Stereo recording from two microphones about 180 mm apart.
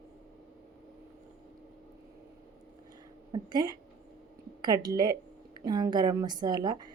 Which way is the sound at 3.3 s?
20° right (ahead or behind).